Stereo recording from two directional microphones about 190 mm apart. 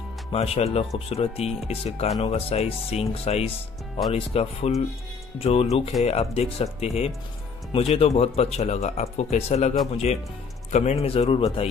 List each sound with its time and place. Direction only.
0.3 s speech: 30° left (ahead or behind)
10.7 s speech: 35° left (ahead or behind)